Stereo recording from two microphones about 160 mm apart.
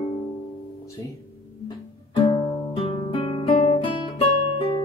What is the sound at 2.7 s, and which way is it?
Guitar, 35° left (ahead or behind).